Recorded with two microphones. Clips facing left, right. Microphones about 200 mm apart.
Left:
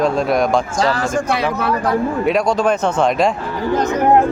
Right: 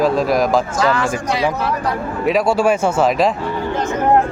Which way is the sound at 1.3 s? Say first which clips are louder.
Even; 60° left (ahead or behind).